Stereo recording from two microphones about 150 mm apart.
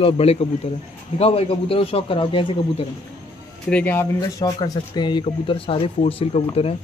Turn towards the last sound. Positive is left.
turn(degrees=40)  # may be behind; listen again after turning